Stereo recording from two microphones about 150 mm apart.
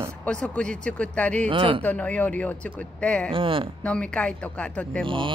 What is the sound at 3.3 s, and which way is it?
Speech, 35° right (ahead or behind).